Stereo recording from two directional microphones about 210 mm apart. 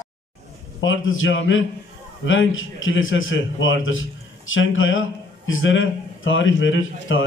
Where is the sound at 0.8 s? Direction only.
70° left (ahead or behind).